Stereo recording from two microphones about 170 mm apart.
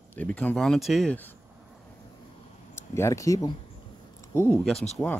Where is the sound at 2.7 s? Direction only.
15° left (ahead or behind).